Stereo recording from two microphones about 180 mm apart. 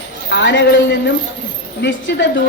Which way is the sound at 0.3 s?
85° left.